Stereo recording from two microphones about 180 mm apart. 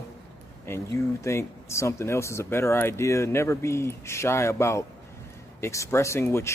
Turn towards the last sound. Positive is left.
turn(degrees=15)  # may be behind; listen again after turning